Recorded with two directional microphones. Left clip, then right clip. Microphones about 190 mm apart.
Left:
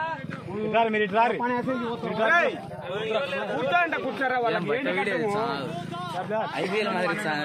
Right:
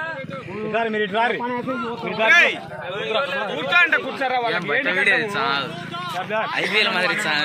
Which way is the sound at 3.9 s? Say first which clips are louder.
Right 6 dB; 65° left (ahead or behind).